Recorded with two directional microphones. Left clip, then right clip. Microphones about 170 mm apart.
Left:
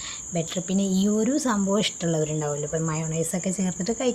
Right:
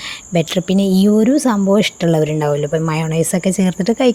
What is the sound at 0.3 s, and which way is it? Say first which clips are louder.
Speech: right 12 dB; 55° right (ahead or behind).